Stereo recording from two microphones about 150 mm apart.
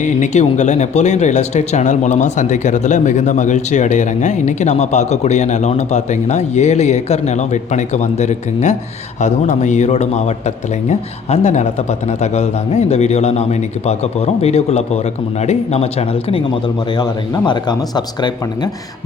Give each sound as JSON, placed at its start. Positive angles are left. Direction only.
{"t": 0.0, "sound": "speech", "side_deg": 50}
{"t": 16.9, "sound": "speech", "side_deg": 30}